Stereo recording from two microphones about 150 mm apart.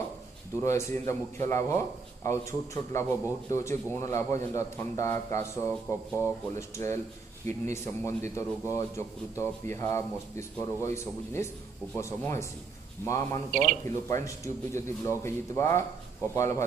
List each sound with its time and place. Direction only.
0.6 s speech: 20° left (ahead or behind)
11.9 s speech: 20° left (ahead or behind)
13.5 s speech: 65° right (ahead or behind)
13.8 s speech: 20° left (ahead or behind)